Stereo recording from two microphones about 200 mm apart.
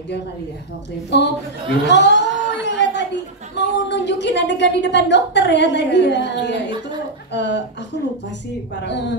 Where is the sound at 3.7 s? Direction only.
60° left (ahead or behind).